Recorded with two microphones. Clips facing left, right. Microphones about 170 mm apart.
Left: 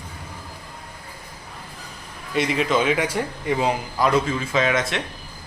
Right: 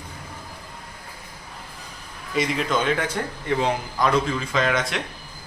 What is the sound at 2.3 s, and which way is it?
A man's voice, centre (ahead or behind).